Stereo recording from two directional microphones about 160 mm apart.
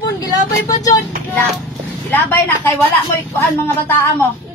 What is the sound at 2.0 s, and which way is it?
Speech, 10° left (ahead or behind).